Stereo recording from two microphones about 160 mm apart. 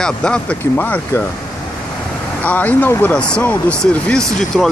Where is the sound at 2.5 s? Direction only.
10° left (ahead or behind).